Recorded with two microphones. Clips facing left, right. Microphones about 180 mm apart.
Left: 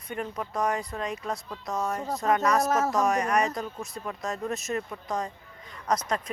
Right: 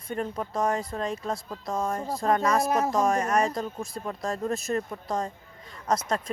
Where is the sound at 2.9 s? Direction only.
30° right (ahead or behind).